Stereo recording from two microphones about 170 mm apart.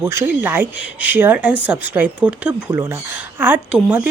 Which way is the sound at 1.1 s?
10° right (ahead or behind).